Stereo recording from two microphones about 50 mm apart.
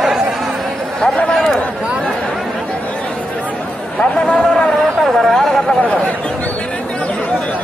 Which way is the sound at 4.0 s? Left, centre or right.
Left.